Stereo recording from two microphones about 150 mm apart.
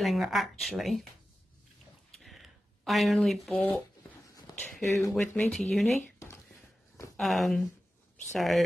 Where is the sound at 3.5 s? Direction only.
10° left (ahead or behind).